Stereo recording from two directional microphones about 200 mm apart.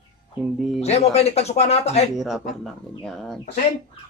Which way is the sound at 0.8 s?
30° left (ahead or behind).